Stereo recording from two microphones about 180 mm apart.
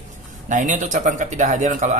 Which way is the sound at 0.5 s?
45° right (ahead or behind).